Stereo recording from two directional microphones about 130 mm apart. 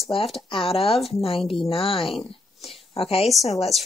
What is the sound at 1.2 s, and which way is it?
Speech, 45° left (ahead or behind).